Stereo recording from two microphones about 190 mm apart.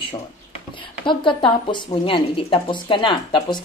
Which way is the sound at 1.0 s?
25° left (ahead or behind).